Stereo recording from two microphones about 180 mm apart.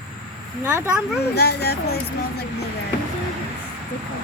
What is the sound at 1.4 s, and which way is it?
Speech, 65° left (ahead or behind).